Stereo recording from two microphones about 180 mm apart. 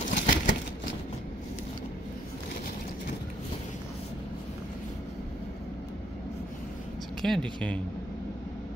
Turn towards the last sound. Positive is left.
turn(degrees=5)  # may be behind; listen again after turning